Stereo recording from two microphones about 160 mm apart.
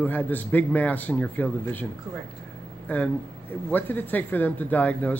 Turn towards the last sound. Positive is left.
turn(degrees=10)  # may be behind; listen again after turning